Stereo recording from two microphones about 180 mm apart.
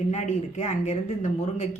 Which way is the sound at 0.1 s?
40° left (ahead or behind).